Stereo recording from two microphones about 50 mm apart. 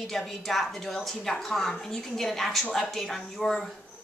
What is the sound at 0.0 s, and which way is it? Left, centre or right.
A woman's voice, centre.